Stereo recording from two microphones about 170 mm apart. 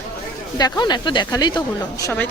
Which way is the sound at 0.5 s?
25° left (ahead or behind).